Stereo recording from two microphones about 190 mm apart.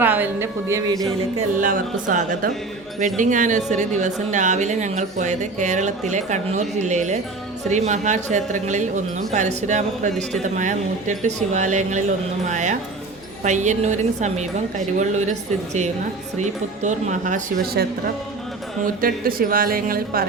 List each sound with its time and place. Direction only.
0.0 s a woman's voice: 10° right (ahead or behind)
1.5 s a woman's voice: 45° right (ahead or behind)
19.0 s a woman's voice: 50° right (ahead or behind)